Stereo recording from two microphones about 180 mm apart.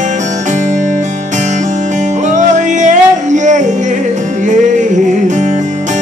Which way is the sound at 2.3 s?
45° right (ahead or behind).